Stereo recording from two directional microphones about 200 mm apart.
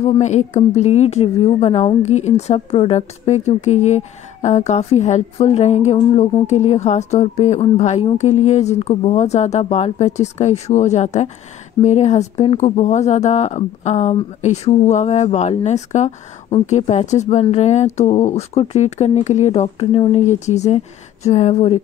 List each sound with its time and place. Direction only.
0.0 s a woman's voice: 35° left (ahead or behind)